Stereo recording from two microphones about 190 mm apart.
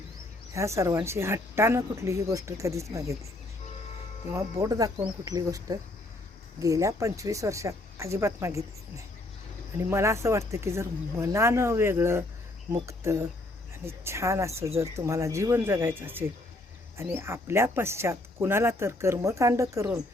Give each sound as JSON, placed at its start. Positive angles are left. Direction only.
{"t": 0.5, "sound": "speech", "side_deg": -15}
{"t": 4.6, "sound": "speech", "side_deg": -20}
{"t": 9.7, "sound": "speech", "side_deg": -15}